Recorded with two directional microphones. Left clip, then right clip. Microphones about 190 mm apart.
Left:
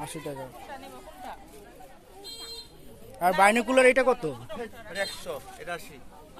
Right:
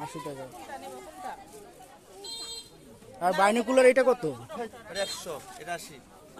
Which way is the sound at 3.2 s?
10° right (ahead or behind).